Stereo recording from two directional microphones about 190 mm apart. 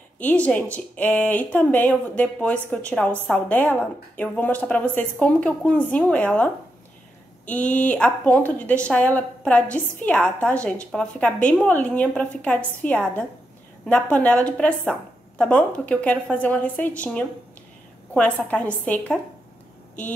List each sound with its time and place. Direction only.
0.2 s speech: 10° left (ahead or behind)